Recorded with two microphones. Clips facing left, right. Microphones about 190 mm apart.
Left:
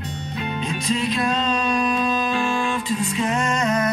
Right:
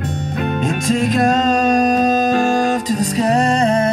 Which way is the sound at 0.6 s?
45° right (ahead or behind).